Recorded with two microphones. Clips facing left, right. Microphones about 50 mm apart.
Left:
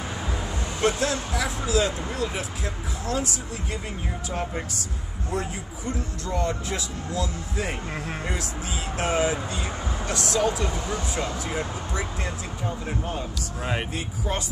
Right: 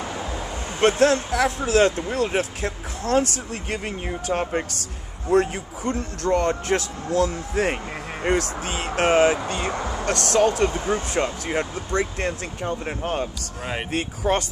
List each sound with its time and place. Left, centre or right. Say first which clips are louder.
0.7 s speech: right 7 dB; right